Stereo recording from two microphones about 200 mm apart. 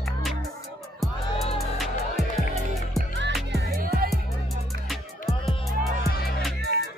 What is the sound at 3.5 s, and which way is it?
Music, 45° right (ahead or behind).